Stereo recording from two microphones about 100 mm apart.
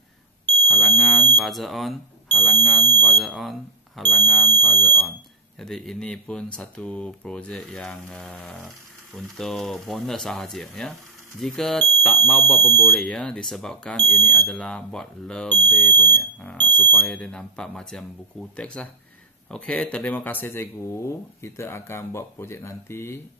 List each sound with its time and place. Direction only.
0.7 s smoke detector: centre (ahead or behind)
1.4 s speech: centre (ahead or behind); by 23.2 s 25° left (ahead or behind)